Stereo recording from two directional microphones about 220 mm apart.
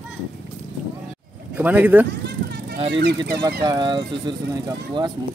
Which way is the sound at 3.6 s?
20° right (ahead or behind).